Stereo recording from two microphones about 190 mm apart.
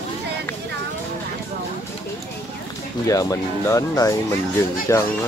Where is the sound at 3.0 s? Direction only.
15° left (ahead or behind).